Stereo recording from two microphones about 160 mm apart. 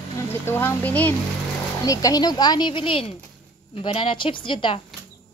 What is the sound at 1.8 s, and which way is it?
A woman's voice, 20° left (ahead or behind).